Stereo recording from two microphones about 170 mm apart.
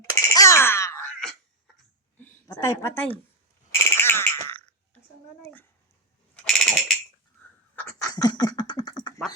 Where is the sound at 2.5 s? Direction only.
20° left (ahead or behind).